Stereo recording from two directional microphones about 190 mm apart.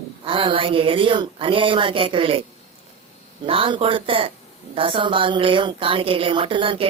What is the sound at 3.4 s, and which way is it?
A woman's voice, 30° right (ahead or behind).